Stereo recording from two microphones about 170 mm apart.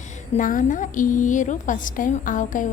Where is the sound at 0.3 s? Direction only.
50° left (ahead or behind).